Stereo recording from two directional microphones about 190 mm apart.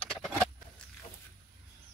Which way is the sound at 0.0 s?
5° left (ahead or behind).